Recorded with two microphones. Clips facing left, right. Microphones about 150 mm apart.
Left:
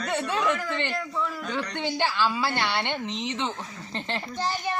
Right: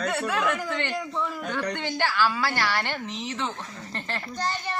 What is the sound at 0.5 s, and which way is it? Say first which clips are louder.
Speech: even; 15° right (ahead or behind).